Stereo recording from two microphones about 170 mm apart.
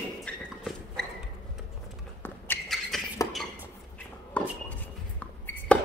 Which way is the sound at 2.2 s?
10° left (ahead or behind).